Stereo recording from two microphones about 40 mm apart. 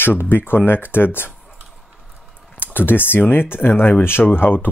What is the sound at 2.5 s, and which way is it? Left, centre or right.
Speech, left.